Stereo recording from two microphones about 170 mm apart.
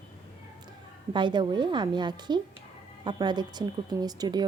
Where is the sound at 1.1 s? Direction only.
30° right (ahead or behind).